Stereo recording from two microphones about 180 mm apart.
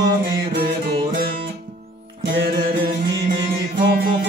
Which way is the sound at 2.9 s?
50° right (ahead or behind).